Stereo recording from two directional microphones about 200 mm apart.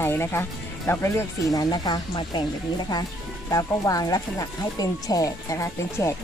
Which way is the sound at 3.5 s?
15° left (ahead or behind).